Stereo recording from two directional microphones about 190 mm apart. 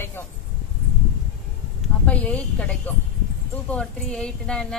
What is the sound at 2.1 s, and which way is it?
A woman's voice, 5° left (ahead or behind).